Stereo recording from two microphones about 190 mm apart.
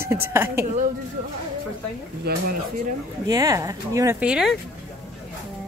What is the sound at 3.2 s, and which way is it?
Speech, 20° right (ahead or behind).